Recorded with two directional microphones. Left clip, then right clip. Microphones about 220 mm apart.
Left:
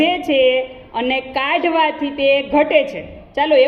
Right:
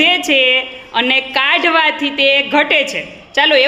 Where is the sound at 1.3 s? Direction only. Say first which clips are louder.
Right 4 dB; 25° right (ahead or behind).